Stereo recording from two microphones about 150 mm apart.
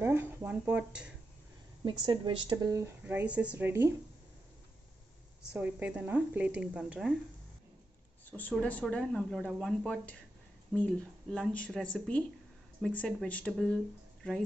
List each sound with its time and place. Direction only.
0.0 s speech: 15° right (ahead or behind)
1.9 s speech: 30° right (ahead or behind); by 3.9 s 15° right (ahead or behind)
5.5 s speech: 10° right (ahead or behind)
8.3 s speech: 10° left (ahead or behind)